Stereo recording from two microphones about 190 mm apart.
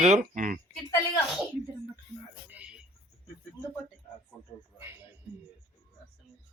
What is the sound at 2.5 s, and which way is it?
Music, 5° right (ahead or behind).